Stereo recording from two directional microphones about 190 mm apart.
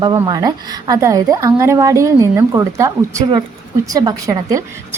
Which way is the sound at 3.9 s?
20° right (ahead or behind).